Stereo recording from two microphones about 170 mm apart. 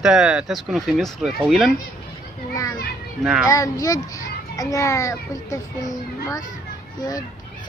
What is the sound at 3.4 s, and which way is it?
A child's voice, 20° left (ahead or behind).